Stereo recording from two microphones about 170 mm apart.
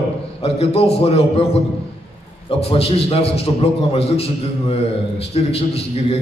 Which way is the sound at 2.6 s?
35° left (ahead or behind).